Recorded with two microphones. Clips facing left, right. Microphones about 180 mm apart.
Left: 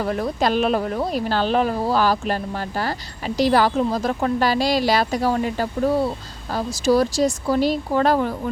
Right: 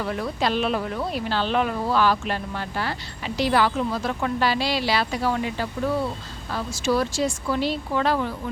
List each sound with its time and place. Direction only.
0.0 s speech: 45° left (ahead or behind)